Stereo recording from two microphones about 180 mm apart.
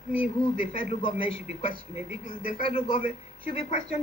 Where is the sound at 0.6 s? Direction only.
30° left (ahead or behind).